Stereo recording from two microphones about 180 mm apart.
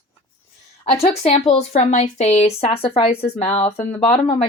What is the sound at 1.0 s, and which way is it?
Speech, 35° left (ahead or behind).